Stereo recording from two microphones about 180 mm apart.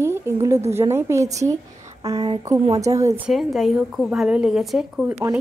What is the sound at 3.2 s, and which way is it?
Speech, centre (ahead or behind).